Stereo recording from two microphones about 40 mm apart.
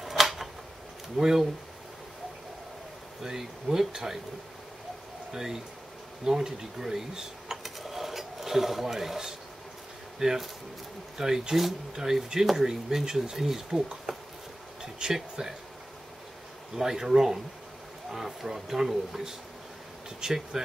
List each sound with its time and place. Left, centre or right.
0.0 s a sound: centre
1.1 s speech: centre
3.2 s speech: centre
5.3 s speech: centre
7.6 s dishes: centre
10.1 s speech: centre
14.8 s a sound: centre
15.4 s speech: right
16.7 s speech: centre